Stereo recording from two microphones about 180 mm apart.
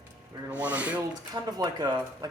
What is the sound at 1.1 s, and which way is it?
Speech, 20° right (ahead or behind).